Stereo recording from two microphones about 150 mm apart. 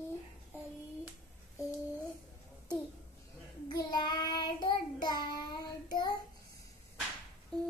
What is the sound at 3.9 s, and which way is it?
Child singing, 30° left (ahead or behind).